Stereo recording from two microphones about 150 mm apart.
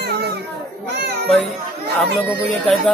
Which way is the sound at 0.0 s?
90° right.